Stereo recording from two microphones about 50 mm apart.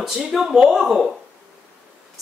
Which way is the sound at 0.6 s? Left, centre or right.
Centre.